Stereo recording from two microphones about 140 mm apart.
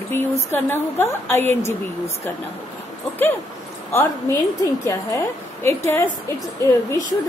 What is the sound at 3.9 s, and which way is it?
A woman's voice, 20° left (ahead or behind).